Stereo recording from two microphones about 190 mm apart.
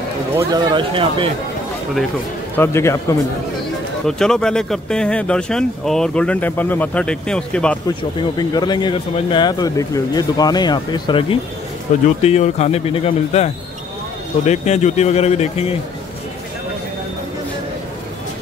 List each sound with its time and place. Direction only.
0.4 s a man's voice: 25° right (ahead or behind)
2.5 s a man's voice: 10° left (ahead or behind)
4.0 s speech: 5° left (ahead or behind)
8.2 s speech: 20° left (ahead or behind)